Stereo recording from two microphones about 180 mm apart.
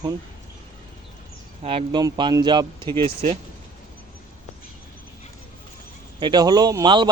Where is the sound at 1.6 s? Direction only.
25° right (ahead or behind).